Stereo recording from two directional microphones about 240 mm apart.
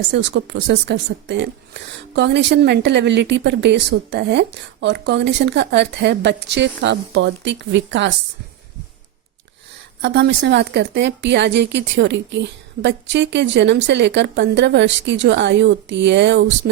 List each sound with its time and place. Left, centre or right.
0.1 s speech: right
10.0 s speech: right